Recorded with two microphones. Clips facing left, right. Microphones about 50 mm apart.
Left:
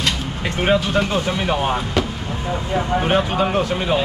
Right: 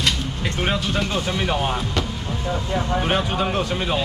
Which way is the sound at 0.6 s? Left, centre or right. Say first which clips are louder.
Left 6 dB; centre.